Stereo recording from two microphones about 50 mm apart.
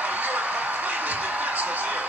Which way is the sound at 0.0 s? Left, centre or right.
Right.